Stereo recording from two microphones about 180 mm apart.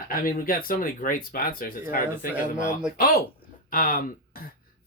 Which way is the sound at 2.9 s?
55° left (ahead or behind).